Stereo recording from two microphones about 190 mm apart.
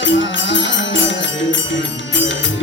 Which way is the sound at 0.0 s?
75° left (ahead or behind).